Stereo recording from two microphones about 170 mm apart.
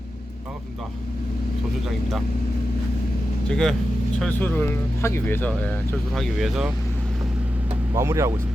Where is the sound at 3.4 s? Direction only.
5° left (ahead or behind).